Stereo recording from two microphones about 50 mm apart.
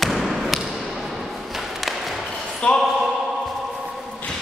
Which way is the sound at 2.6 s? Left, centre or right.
Left.